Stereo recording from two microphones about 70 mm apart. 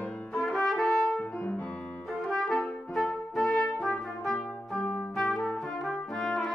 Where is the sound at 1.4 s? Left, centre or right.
Left.